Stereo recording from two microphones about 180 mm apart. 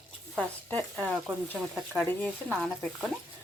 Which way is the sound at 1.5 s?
10° left (ahead or behind).